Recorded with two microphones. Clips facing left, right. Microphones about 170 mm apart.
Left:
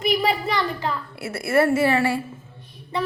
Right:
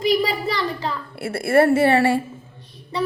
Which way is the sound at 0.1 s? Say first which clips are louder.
Even; 35° right (ahead or behind).